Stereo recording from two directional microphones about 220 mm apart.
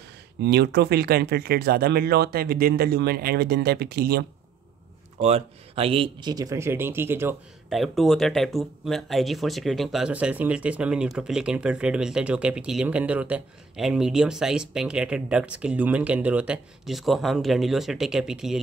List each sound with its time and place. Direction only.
0.4 s speech: 50° right (ahead or behind)
5.2 s speech: 25° right (ahead or behind); by 7.3 s 10° right (ahead or behind)
7.7 s speech: centre (ahead or behind)